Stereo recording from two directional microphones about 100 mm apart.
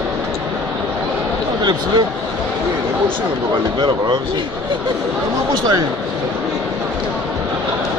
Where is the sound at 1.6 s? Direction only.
45° right (ahead or behind).